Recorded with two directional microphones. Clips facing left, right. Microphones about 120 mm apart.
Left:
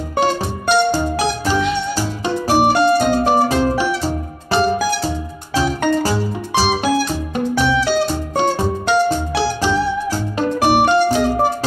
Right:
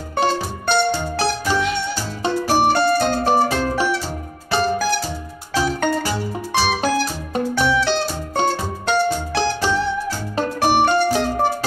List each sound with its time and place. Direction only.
0.2 s music: 10° left (ahead or behind)
2.5 s music: 10° left (ahead or behind)
7.5 s music: 10° left (ahead or behind)